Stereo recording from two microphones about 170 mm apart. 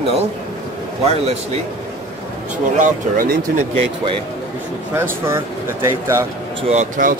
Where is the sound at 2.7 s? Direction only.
50° right (ahead or behind).